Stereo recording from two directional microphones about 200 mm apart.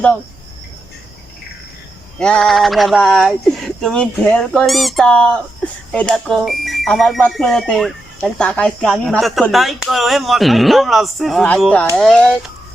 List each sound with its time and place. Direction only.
2.1 s speech: 5° left (ahead or behind)